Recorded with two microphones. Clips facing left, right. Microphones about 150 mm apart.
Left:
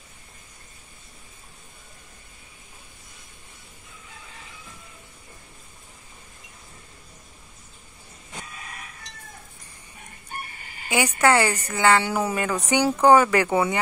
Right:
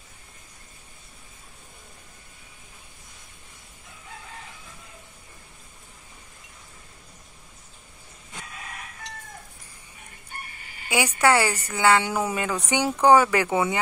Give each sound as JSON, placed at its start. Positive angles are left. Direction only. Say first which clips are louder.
{"t": 10.9, "sound": "a woman's voice", "louder": "left 1 dB", "side_deg": -10}